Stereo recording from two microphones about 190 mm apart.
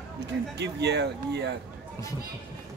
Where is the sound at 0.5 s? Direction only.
65° right (ahead or behind).